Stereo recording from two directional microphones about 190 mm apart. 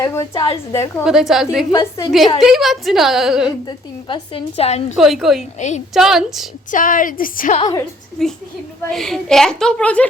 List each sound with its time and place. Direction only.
0.0 s a woman's voice: 15° left (ahead or behind)
1.0 s a woman's voice: centre (ahead or behind)
1.7 s a woman's voice: 15° left (ahead or behind)
2.4 s a woman's voice: centre (ahead or behind)
3.7 s a woman's voice: 25° left (ahead or behind)
4.9 s a woman's voice: centre (ahead or behind)
5.5 s a woman's voice: 40° left (ahead or behind)
5.9 s a woman's voice: centre (ahead or behind)
6.7 s a woman's voice: 45° left (ahead or behind)
8.2 s a woman's voice: 5° left (ahead or behind)